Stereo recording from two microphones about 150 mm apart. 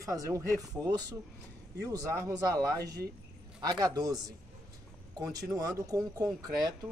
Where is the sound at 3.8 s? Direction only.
25° right (ahead or behind).